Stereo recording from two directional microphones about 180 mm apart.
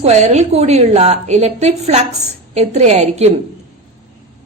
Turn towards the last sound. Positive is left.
turn(degrees=-40)  # may be behind; listen again after turning